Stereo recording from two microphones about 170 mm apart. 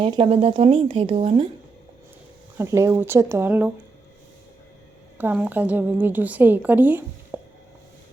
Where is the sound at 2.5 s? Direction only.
15° right (ahead or behind).